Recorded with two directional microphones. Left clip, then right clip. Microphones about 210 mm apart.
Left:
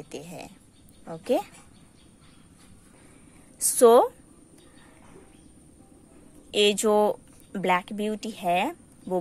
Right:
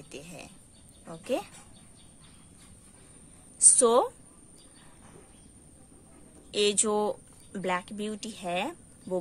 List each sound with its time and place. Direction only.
0.1 s a woman's voice: 25° left (ahead or behind)
3.5 s a woman's voice: 20° left (ahead or behind)
6.5 s speech: 20° left (ahead or behind)